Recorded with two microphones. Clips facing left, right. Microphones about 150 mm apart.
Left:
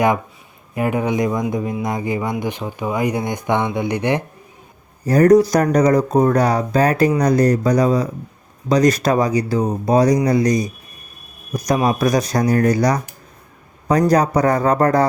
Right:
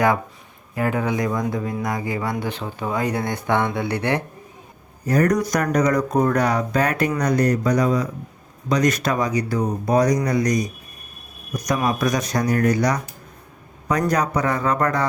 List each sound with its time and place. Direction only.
0.8 s speech: 20° left (ahead or behind)
5.0 s speech: 30° left (ahead or behind)
14.1 s speech: 35° left (ahead or behind)